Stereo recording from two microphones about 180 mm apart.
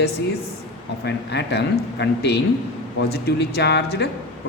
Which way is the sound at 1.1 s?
70° left (ahead or behind).